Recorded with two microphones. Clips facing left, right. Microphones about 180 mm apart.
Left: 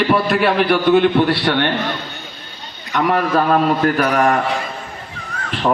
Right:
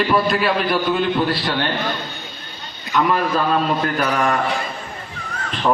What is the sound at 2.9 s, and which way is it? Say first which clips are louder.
A man's voice: left 2 dB; 60° left (ahead or behind).